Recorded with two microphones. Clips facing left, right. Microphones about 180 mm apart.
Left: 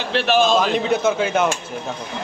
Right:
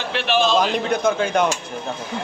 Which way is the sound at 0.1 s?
40° left (ahead or behind).